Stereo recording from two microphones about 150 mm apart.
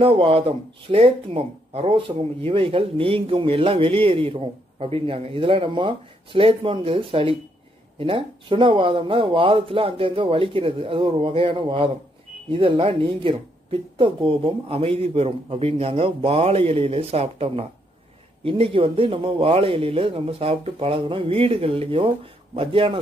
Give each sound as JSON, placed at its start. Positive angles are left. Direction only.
{"t": 0.0, "sound": "speech", "side_deg": -40}